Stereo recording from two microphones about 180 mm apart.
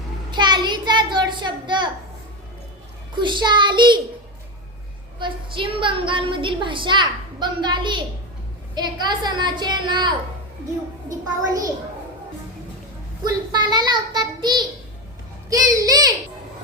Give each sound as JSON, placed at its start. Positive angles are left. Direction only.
{"t": 0.3, "sound": "a child's voice", "side_deg": -25}
{"t": 3.2, "sound": "a woman's voice", "side_deg": -25}
{"t": 5.2, "sound": "a woman's voice", "side_deg": -30}
{"t": 11.4, "sound": "a woman's voice", "side_deg": -20}
{"t": 13.2, "sound": "a woman's voice", "side_deg": -25}